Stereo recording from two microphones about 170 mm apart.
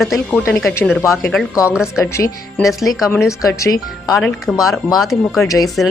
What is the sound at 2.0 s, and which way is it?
Speech, 15° left (ahead or behind).